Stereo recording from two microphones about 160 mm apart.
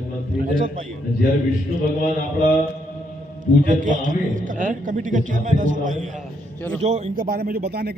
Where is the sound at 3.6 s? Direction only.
55° right (ahead or behind).